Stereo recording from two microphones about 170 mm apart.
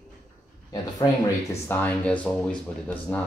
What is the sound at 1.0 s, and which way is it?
Speech, 25° left (ahead or behind).